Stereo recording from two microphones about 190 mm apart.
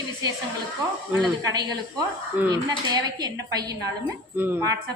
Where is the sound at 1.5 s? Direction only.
20° right (ahead or behind).